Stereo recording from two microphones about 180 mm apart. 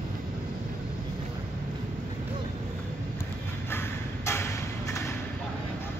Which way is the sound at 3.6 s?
15° left (ahead or behind).